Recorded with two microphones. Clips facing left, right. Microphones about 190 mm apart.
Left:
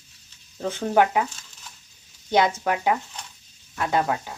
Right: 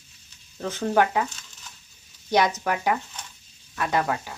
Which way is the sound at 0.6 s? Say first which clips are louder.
Left 2 dB; 15° left (ahead or behind).